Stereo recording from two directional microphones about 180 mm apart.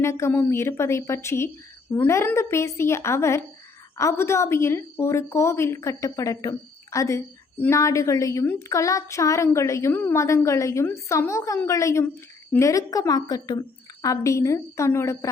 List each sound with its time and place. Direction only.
0.0 s a woman's voice: 15° left (ahead or behind)